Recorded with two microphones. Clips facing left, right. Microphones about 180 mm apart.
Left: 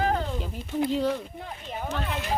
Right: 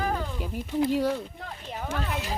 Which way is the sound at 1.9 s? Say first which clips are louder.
Even; 5° right (ahead or behind).